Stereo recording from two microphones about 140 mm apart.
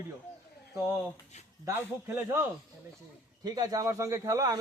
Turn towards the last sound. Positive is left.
turn(degrees=-25)  # may be behind; listen again after turning